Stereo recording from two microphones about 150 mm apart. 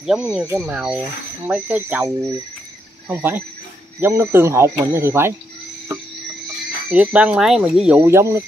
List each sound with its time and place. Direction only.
0.0 s speech: centre (ahead or behind)
6.9 s speech: 10° right (ahead or behind)
8.0 s speech: 20° right (ahead or behind)